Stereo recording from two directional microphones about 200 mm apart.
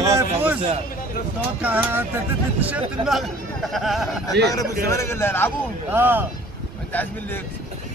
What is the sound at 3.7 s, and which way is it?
Speech, centre (ahead or behind).